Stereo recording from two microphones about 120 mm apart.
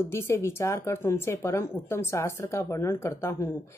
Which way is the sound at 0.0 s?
25° left (ahead or behind).